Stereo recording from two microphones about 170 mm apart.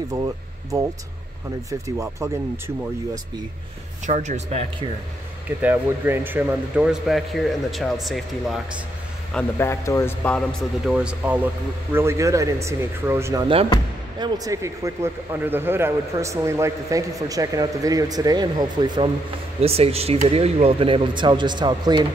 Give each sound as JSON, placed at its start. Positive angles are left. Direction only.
{"t": 0.1, "sound": "speech", "side_deg": -20}
{"t": 4.0, "sound": "speech", "side_deg": -45}
{"t": 5.6, "sound": "speech", "side_deg": -10}
{"t": 9.3, "sound": "speech", "side_deg": 10}
{"t": 10.9, "sound": "speech", "side_deg": -5}
{"t": 19.6, "sound": "speech", "side_deg": -35}